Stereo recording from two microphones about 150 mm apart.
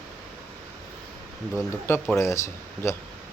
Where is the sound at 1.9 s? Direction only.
20° left (ahead or behind).